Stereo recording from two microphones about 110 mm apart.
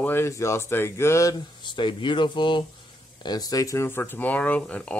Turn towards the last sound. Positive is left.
turn(degrees=10)  # may be behind; listen again after turning